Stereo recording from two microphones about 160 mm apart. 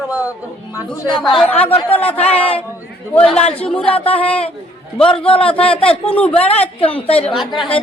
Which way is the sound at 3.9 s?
35° left (ahead or behind).